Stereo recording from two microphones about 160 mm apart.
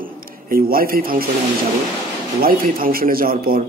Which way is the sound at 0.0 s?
65° right (ahead or behind).